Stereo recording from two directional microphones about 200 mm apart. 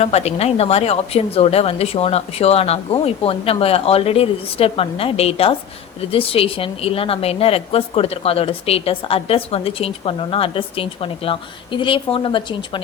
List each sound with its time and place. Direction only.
0.0 s speech: 30° left (ahead or behind)